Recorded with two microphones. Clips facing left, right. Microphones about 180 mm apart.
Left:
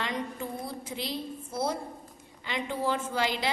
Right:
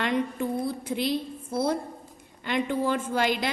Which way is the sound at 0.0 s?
60° right (ahead or behind).